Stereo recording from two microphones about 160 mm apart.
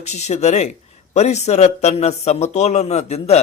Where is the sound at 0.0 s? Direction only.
45° left (ahead or behind).